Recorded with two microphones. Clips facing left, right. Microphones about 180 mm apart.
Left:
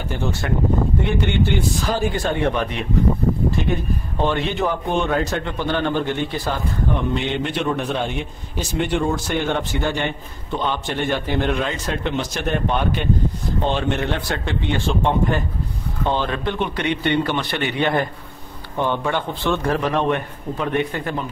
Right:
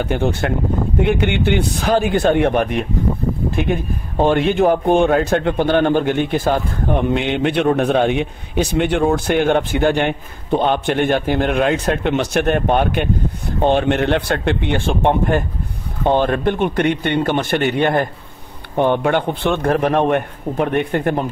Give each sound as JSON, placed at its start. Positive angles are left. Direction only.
{"t": 0.0, "sound": "a man's voice", "side_deg": -65}